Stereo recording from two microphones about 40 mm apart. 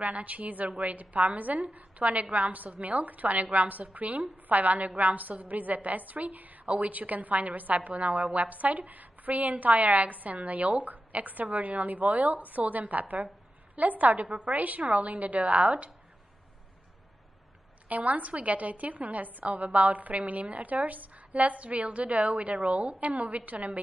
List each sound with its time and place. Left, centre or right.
0.0 s a woman's voice: right
17.8 s a woman's voice: right